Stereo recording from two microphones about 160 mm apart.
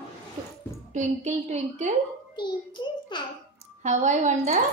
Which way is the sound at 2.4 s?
30° left (ahead or behind).